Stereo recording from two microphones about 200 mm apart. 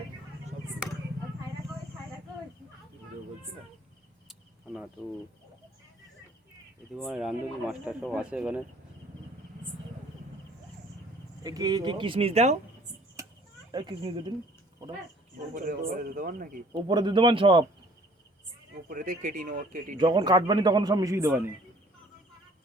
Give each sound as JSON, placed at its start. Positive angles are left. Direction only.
{"t": 4.3, "sound": "cricket", "side_deg": -5}
{"t": 6.9, "sound": "speech", "side_deg": 0}
{"t": 11.4, "sound": "a man's voice", "side_deg": -20}
{"t": 13.2, "sound": "a sound", "side_deg": -15}
{"t": 13.7, "sound": "a man's voice", "side_deg": -25}
{"t": 15.5, "sound": "speech", "side_deg": -45}
{"t": 16.7, "sound": "a man's voice", "side_deg": -20}
{"t": 18.9, "sound": "speech", "side_deg": -40}
{"t": 20.0, "sound": "a man's voice", "side_deg": -20}